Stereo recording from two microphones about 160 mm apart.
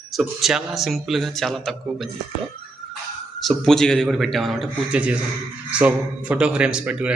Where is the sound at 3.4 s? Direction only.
Centre (ahead or behind).